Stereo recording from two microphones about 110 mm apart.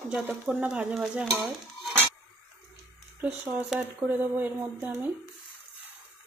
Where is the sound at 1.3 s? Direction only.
Centre (ahead or behind).